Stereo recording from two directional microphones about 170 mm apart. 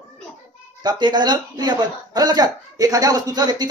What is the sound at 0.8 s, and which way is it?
Speech, 25° right (ahead or behind).